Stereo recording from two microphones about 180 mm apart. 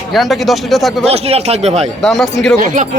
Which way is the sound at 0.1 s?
Centre (ahead or behind).